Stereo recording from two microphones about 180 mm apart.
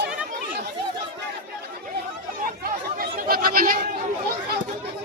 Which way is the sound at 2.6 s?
55° right (ahead or behind).